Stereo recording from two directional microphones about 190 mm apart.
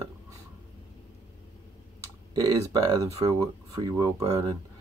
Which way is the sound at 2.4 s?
20° right (ahead or behind).